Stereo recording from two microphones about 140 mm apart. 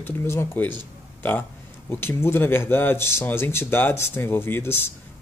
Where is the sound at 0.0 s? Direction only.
15° left (ahead or behind).